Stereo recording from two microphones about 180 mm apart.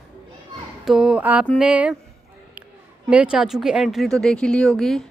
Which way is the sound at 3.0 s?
5° right (ahead or behind).